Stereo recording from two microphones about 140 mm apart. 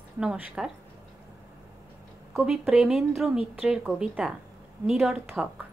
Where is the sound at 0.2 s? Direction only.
5° right (ahead or behind).